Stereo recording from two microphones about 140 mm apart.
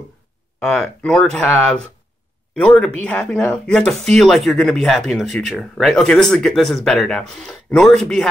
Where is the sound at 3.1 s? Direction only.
5° left (ahead or behind).